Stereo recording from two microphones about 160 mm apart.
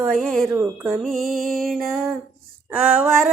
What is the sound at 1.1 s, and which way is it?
Music, centre (ahead or behind).